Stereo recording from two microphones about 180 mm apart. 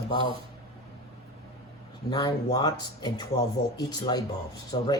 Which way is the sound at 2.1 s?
20° left (ahead or behind).